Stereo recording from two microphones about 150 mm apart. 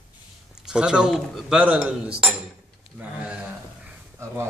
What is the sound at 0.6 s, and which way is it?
Speech, 5° right (ahead or behind).